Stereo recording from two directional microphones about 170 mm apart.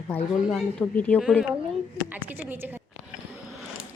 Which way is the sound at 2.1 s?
10° right (ahead or behind).